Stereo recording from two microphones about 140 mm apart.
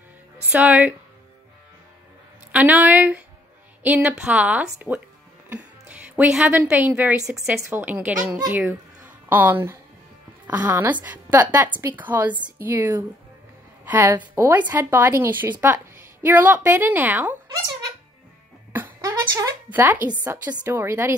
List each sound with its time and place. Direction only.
0.5 s a woman's voice: 10° right (ahead or behind)
2.5 s a woman's voice: 10° right (ahead or behind)
18.7 s a sound: 15° right (ahead or behind)
19.7 s a woman's voice: 15° right (ahead or behind)